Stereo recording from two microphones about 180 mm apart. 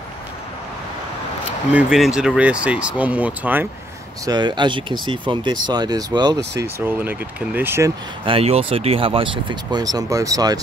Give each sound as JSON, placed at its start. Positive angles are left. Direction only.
{"t": 1.7, "sound": "speech", "side_deg": -5}
{"t": 4.3, "sound": "speech", "side_deg": -25}
{"t": 6.6, "sound": "speech", "side_deg": -10}
{"t": 8.3, "sound": "speech", "side_deg": -35}